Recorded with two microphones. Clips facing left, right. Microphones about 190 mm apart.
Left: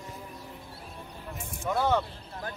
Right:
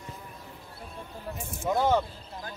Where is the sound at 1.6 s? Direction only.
15° right (ahead or behind).